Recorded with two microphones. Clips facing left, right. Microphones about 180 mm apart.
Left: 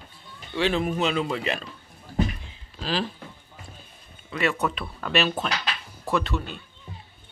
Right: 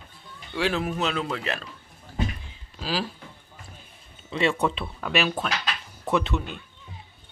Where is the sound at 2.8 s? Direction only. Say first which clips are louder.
Left 1 dB; 10° right (ahead or behind).